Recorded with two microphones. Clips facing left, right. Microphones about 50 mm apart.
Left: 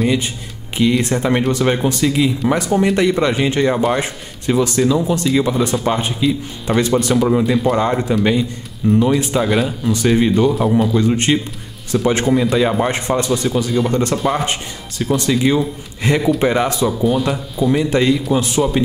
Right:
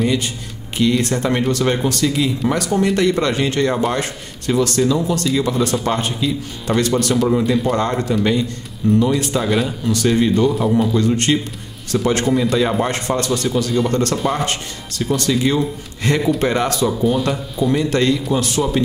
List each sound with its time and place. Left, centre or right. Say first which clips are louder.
0.7 s speech: left 1 dB; centre
4.0 s speech: left 1 dB; centre
9.9 s speech: left 1 dB; centre
10.5 s a man's voice: left 1 dB; centre
11.0 s speech: left 1 dB; centre
17.0 s speech: left 1 dB; centre